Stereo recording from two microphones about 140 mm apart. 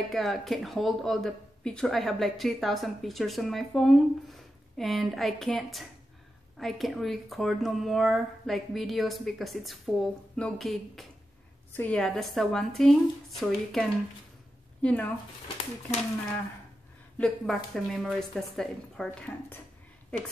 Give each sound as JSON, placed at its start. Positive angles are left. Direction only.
{"t": 0.1, "sound": "speech", "side_deg": 0}
{"t": 15.4, "sound": "speech", "side_deg": 45}
{"t": 17.2, "sound": "speech", "side_deg": 0}